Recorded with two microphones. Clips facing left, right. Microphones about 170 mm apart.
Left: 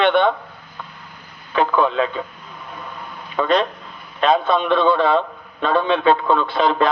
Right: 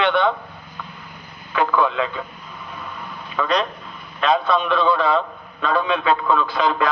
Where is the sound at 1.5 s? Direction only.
25° left (ahead or behind).